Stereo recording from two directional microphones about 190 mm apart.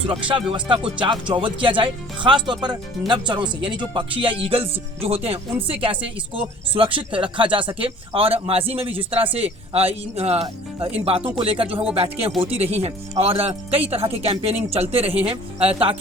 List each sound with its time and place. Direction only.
0.0 s speech: 25° right (ahead or behind)